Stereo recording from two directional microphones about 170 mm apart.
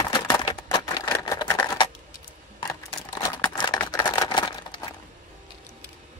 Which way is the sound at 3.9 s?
20° left (ahead or behind).